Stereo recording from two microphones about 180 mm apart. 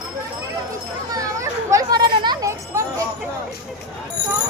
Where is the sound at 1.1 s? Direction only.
20° right (ahead or behind).